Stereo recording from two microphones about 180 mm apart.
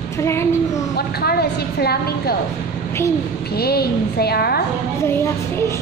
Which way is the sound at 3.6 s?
60° left (ahead or behind).